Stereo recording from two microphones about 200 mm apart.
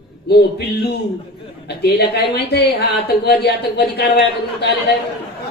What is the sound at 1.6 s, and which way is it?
A woman's voice, 55° left (ahead or behind).